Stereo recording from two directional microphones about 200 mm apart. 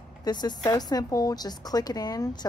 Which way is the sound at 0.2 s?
20° left (ahead or behind).